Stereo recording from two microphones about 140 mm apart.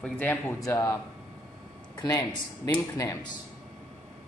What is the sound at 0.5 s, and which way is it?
Speech, 20° left (ahead or behind).